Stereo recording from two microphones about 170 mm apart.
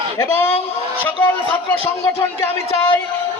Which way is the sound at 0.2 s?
10° left (ahead or behind).